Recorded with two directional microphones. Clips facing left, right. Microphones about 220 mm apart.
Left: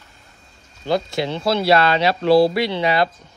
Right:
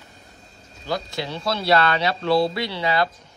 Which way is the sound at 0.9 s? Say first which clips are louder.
Left 6 dB; 25° left (ahead or behind).